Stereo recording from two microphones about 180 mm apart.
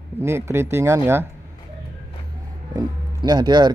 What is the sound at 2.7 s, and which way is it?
Speech, 20° right (ahead or behind).